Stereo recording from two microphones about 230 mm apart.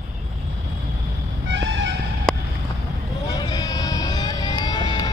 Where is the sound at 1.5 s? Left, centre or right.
Right.